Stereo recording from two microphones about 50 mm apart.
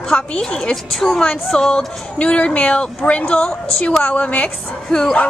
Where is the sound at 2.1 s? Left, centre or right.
Left.